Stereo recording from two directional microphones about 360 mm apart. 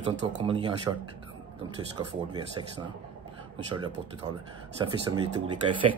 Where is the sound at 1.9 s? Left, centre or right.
Centre.